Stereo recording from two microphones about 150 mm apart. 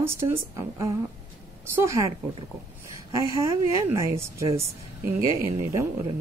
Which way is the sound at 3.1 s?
20° right (ahead or behind).